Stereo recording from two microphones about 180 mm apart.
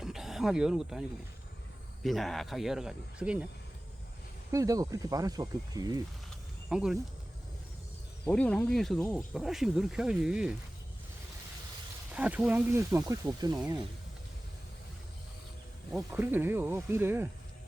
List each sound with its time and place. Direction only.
0.0 s speech: centre (ahead or behind)
2.0 s speech: centre (ahead or behind)
4.5 s speech: 20° right (ahead or behind)
6.7 s speech: 5° right (ahead or behind)
8.2 s speech: 5° left (ahead or behind)
12.1 s speech: 5° right (ahead or behind)
15.9 s speech: 10° right (ahead or behind)